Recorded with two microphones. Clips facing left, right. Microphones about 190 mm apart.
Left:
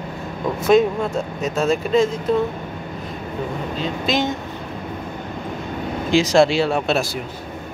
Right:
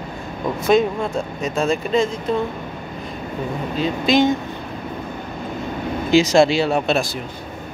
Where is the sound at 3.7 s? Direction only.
Centre (ahead or behind).